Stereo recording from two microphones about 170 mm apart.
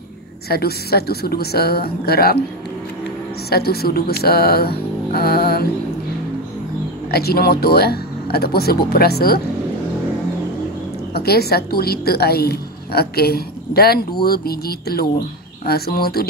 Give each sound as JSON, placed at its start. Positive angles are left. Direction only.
{"t": 0.5, "sound": "speech", "side_deg": 65}
{"t": 3.4, "sound": "a woman's voice", "side_deg": 65}
{"t": 7.1, "sound": "a woman's voice", "side_deg": 65}
{"t": 11.1, "sound": "a woman's voice", "side_deg": 65}